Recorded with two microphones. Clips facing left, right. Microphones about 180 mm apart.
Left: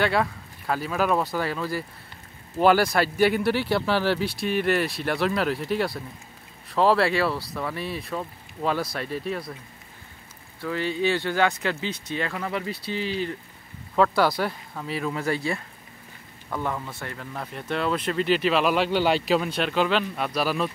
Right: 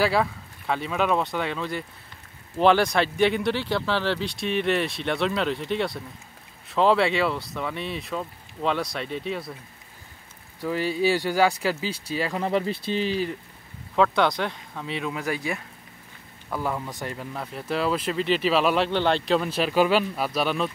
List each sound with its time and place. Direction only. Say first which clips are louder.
0.0 s speech: right 1 dB; centre (ahead or behind)
10.6 s speech: right 2 dB; 10° right (ahead or behind)
11.9 s speech: right 2 dB; 30° right (ahead or behind)
13.9 s speech: even; 5° left (ahead or behind)
15.2 s speech: left 2 dB; 10° right (ahead or behind)
17.3 s speech: left 1 dB; 5° right (ahead or behind)